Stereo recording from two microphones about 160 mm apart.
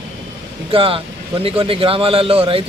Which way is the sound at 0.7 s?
35° right (ahead or behind).